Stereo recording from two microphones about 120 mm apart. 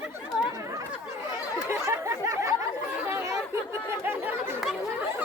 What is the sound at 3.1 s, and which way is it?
Chatter, 25° right (ahead or behind).